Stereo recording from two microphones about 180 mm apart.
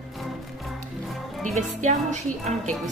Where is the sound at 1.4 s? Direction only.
45° right (ahead or behind).